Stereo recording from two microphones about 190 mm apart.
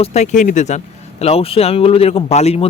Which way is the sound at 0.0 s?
35° left (ahead or behind).